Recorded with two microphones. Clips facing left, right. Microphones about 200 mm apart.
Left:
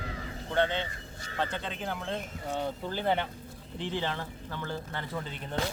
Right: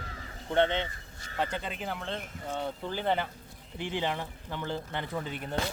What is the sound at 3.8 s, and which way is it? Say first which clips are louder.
Speech: right 1 dB; 15° right (ahead or behind).